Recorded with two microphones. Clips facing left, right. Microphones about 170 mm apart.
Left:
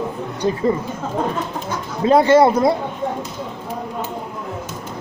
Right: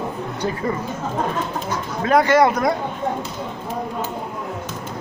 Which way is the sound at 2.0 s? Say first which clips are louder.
Left 3 dB; 25° left (ahead or behind).